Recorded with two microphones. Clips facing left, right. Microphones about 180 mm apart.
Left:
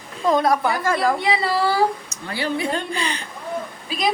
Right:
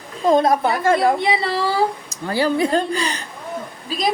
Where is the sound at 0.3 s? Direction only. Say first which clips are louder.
Right 3 dB; 25° right (ahead or behind).